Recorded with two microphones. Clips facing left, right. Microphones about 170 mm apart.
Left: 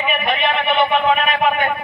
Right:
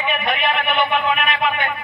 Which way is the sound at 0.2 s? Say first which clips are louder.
Left 2 dB; 30° left (ahead or behind).